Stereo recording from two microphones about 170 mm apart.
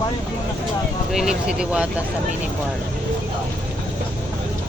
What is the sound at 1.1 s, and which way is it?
Speech, 5° right (ahead or behind).